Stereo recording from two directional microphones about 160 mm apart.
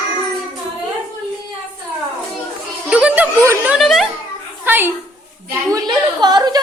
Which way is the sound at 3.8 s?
Centre (ahead or behind).